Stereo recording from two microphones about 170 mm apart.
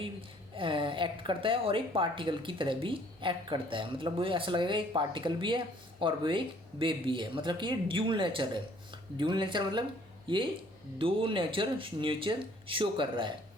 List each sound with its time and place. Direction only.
0.0 s a woman's voice: 30° right (ahead or behind)